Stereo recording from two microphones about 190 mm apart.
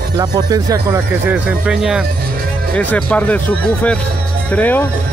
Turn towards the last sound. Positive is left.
turn(degrees=10)  # may be behind; listen again after turning